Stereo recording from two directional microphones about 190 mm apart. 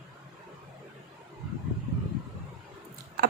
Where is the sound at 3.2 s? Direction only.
55° right (ahead or behind).